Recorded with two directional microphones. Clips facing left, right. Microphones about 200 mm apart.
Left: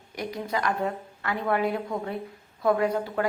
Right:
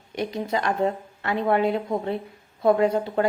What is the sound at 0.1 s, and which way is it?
A woman's voice, 25° right (ahead or behind).